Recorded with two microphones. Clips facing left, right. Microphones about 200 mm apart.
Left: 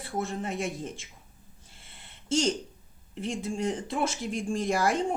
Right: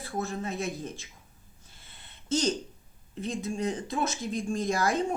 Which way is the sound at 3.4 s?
30° left (ahead or behind).